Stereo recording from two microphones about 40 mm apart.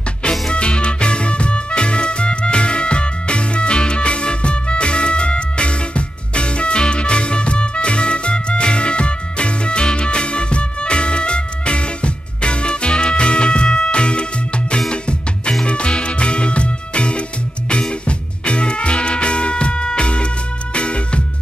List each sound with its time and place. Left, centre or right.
0.2 s music: left